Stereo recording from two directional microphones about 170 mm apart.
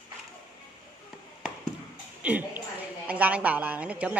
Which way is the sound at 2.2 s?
10° right (ahead or behind).